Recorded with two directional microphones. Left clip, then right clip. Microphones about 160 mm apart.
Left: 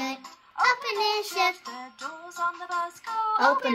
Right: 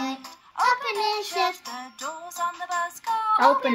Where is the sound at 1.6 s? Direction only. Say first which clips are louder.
Right 3 dB; 35° right (ahead or behind).